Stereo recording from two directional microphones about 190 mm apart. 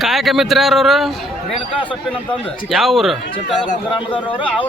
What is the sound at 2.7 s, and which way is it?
Speech, centre (ahead or behind).